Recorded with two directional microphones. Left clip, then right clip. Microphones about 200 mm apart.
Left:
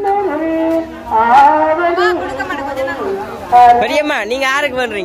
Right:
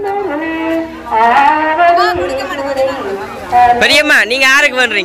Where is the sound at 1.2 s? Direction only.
40° left (ahead or behind).